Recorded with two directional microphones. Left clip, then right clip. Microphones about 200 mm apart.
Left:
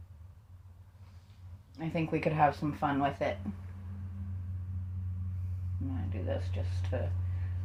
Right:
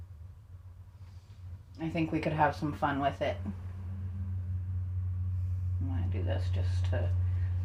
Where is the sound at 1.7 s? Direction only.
25° left (ahead or behind).